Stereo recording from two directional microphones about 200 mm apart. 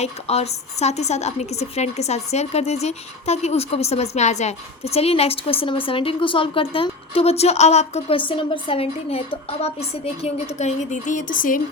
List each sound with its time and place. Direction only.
0.0 s a woman's voice: 30° left (ahead or behind)